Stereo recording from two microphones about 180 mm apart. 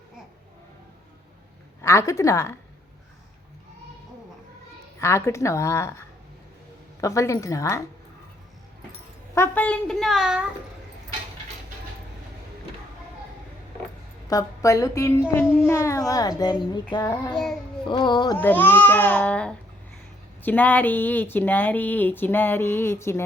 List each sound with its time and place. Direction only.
1.8 s speech: 15° left (ahead or behind)
4.9 s speech: 15° left (ahead or behind)
9.3 s a woman's voice: 10° left (ahead or behind)
14.3 s speech: 20° left (ahead or behind)
17.2 s a woman's voice: 5° left (ahead or behind)
17.8 s speech: 25° left (ahead or behind)
18.3 s speech: 10° left (ahead or behind)